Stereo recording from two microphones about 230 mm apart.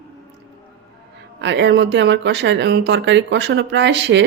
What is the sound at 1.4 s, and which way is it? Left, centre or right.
Speech, right.